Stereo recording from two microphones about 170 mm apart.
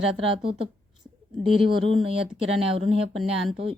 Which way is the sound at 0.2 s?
35° right (ahead or behind).